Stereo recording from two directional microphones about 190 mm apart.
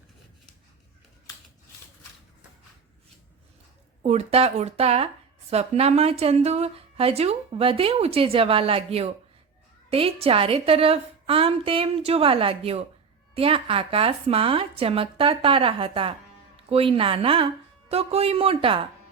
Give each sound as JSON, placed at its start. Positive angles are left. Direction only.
{"t": 4.0, "sound": "a woman's voice", "side_deg": -35}